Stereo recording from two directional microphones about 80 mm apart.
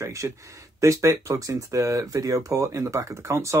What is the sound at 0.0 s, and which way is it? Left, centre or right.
Speech, right.